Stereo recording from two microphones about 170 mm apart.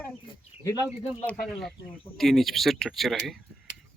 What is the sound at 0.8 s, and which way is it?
Speech, 15° right (ahead or behind).